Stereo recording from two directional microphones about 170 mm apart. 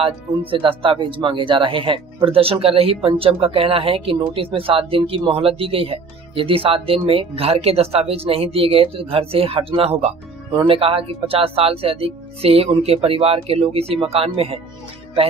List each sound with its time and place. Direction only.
0.0 s speech: 30° right (ahead or behind)